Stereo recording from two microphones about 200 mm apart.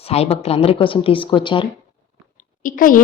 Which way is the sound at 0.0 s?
30° left (ahead or behind).